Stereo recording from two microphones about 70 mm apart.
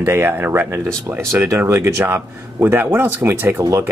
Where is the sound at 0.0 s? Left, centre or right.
Right.